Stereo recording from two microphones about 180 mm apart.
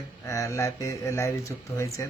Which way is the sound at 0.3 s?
15° left (ahead or behind).